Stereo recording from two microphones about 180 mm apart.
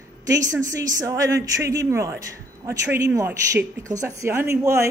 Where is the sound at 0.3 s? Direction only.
20° right (ahead or behind).